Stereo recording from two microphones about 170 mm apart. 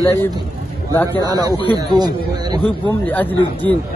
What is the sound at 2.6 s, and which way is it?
Speech, 10° left (ahead or behind).